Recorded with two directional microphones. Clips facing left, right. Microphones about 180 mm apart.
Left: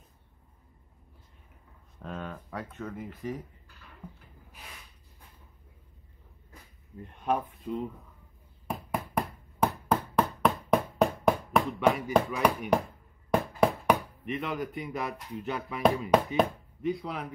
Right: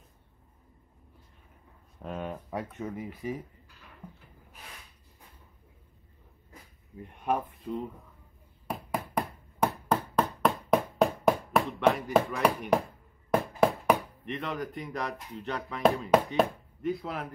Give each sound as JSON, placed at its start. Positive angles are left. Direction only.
{"t": 2.0, "sound": "speech", "side_deg": -15}
{"t": 7.1, "sound": "speech", "side_deg": -10}
{"t": 8.6, "sound": "a sound", "side_deg": 0}
{"t": 12.3, "sound": "speech", "side_deg": 0}
{"t": 16.1, "sound": "chopping", "side_deg": 0}